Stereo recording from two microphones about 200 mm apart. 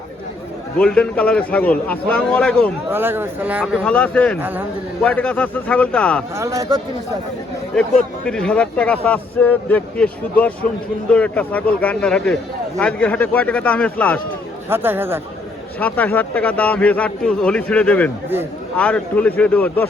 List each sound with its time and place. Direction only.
0.8 s a man's voice: 5° left (ahead or behind)
2.9 s speech: 10° right (ahead or behind)
3.8 s a man's voice: 5° left (ahead or behind)
4.4 s speech: 10° right (ahead or behind)
5.0 s a man's voice: 5° left (ahead or behind)
6.3 s speech: 15° right (ahead or behind)
7.8 s a man's voice: 5° left (ahead or behind)
14.7 s speech: 10° right (ahead or behind)
15.8 s a man's voice: 10° left (ahead or behind)